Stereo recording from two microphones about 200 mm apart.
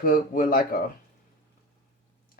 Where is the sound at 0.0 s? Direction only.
45° left (ahead or behind).